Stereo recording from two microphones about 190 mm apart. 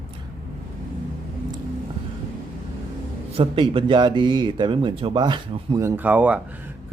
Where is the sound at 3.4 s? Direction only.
30° right (ahead or behind).